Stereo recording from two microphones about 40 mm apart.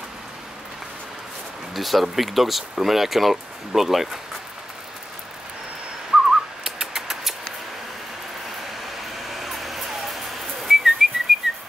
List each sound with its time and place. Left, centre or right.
1.7 s speech: centre
6.1 s whistling: centre
6.6 s bird: centre
9.3 s whistling: centre
11.3 s whistling: centre